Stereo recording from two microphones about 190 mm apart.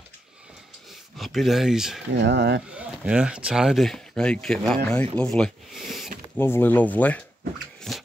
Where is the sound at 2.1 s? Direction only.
70° right (ahead or behind).